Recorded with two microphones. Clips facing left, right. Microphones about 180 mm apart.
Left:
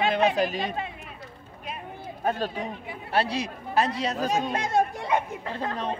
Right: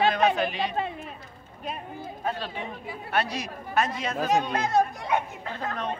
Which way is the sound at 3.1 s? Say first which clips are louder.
Left 3 dB; 30° left (ahead or behind).